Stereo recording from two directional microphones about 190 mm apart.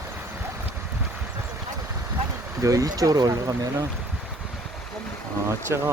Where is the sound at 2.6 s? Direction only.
15° right (ahead or behind).